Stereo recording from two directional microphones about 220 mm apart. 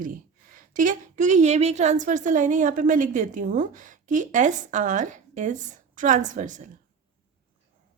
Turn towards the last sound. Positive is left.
turn(degrees=-35)  # may be behind; listen again after turning